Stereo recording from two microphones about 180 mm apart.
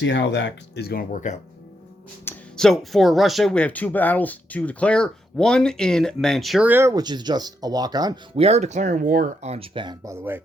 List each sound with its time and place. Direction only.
0.0 s speech: 80° left; by 1.4 s 45° left (ahead or behind)
2.2 s speech: centre (ahead or behind); by 8.2 s 20° right (ahead or behind)
8.4 s speech: 35° right (ahead or behind); by 10.4 s 10° right (ahead or behind)